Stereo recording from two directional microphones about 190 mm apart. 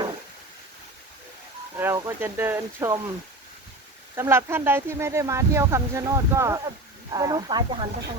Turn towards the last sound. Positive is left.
turn(degrees=-25)  # may be behind; listen again after turning